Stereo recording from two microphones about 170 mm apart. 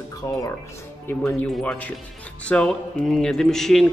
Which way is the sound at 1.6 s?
5° left (ahead or behind).